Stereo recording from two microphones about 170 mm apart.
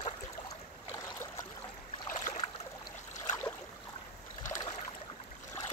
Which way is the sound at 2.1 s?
45° left (ahead or behind).